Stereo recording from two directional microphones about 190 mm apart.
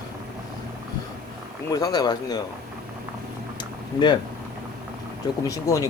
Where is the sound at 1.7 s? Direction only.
20° left (ahead or behind).